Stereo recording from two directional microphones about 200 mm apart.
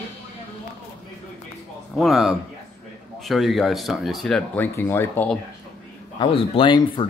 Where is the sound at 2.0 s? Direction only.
Centre (ahead or behind).